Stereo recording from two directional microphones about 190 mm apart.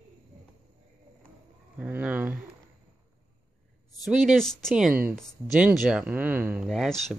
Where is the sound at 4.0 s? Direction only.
Centre (ahead or behind).